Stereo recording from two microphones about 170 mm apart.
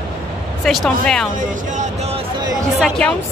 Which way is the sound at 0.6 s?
Centre (ahead or behind).